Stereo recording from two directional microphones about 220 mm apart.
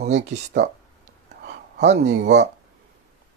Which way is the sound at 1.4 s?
50° right (ahead or behind).